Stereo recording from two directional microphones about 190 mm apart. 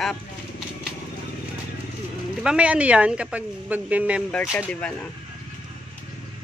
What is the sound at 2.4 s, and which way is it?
A woman's voice, 5° right (ahead or behind).